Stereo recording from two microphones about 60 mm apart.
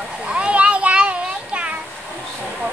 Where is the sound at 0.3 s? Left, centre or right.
Centre.